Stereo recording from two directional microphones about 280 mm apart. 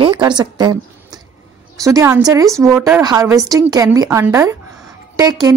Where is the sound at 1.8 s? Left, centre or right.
Centre.